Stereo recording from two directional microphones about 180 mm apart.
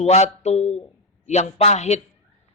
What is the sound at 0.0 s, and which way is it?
A man's voice, 35° left (ahead or behind).